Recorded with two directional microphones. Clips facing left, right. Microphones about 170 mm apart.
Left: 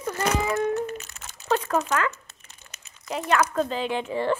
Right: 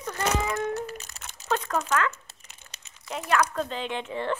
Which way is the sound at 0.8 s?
35° right (ahead or behind).